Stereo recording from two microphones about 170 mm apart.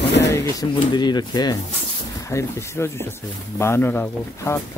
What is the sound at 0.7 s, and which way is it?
Speech, 25° left (ahead or behind).